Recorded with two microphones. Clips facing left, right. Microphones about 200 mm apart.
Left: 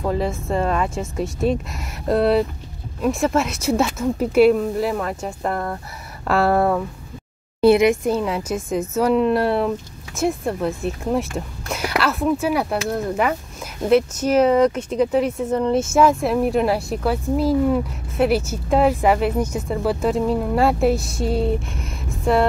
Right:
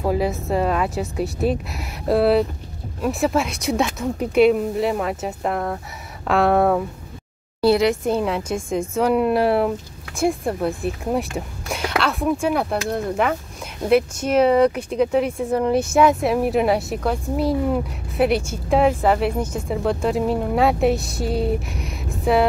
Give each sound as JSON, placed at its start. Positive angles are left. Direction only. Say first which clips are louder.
{"t": 0.0, "sound": "a woman's voice", "louder": "right 1 dB", "side_deg": -10}
{"t": 7.6, "sound": "a woman's voice", "louder": "left 3 dB", "side_deg": 20}
{"t": 8.1, "sound": "a woman's voice", "louder": "even", "side_deg": 0}